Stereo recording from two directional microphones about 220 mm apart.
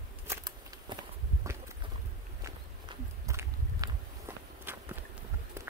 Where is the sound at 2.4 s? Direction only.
15° right (ahead or behind).